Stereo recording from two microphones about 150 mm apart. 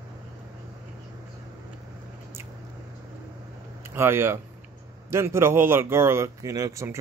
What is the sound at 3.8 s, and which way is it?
Speech, 15° right (ahead or behind).